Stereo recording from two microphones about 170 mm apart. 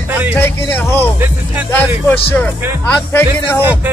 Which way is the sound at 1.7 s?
10° left (ahead or behind).